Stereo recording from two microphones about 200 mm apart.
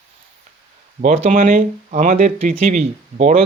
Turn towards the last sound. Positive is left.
turn(degrees=-35)  # may be behind; listen again after turning